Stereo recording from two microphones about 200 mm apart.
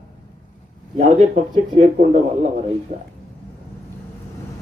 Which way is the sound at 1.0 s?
35° right (ahead or behind).